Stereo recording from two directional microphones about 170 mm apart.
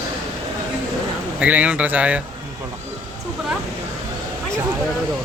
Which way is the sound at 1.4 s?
10° right (ahead or behind).